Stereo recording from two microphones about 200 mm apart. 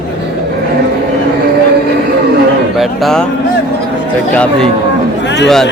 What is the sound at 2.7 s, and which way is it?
Speech, centre (ahead or behind).